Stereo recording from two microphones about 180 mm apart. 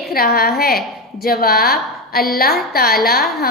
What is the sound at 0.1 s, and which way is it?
A woman's voice, 55° left (ahead or behind).